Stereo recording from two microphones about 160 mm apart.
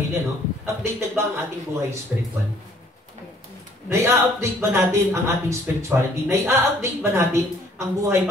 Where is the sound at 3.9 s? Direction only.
15° right (ahead or behind).